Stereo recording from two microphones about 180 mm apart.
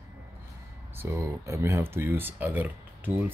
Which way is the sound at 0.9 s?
15° right (ahead or behind).